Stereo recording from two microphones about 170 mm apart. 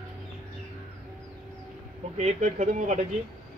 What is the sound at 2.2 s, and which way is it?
Speech, 45° right (ahead or behind).